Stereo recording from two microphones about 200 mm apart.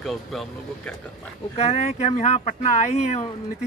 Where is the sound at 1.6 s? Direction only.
35° left (ahead or behind).